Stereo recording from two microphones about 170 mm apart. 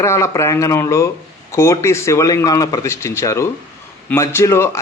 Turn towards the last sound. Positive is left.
turn(degrees=15)  # may be behind; listen again after turning